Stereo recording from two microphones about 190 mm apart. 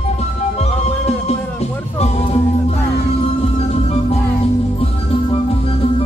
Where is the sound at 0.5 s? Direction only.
35° left (ahead or behind).